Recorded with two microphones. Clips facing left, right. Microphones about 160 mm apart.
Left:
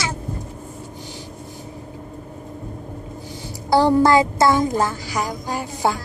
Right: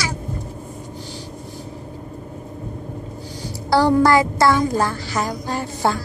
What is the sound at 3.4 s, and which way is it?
A woman's voice, 20° left (ahead or behind).